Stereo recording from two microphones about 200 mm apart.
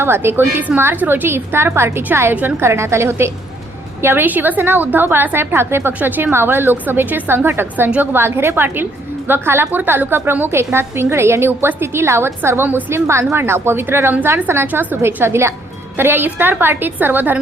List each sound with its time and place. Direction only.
0.0 s a woman's voice: 10° right (ahead or behind)